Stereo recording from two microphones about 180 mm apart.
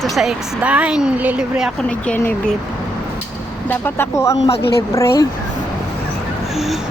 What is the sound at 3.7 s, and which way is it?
Speech, 15° left (ahead or behind).